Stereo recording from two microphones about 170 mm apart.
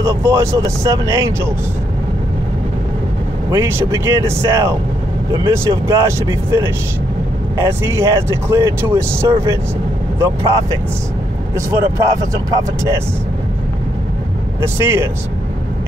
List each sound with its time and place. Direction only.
0.0 s speech: 15° right (ahead or behind)
3.4 s speech: 15° right (ahead or behind)
14.6 s speech: 15° right (ahead or behind)